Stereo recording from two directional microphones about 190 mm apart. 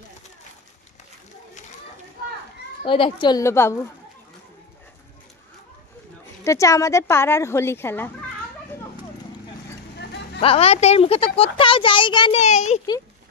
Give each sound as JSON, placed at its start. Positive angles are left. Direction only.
{"t": 2.8, "sound": "speech", "side_deg": 25}
{"t": 6.4, "sound": "speech", "side_deg": 15}
{"t": 9.9, "sound": "vehicle", "side_deg": 60}
{"t": 10.4, "sound": "speech", "side_deg": 30}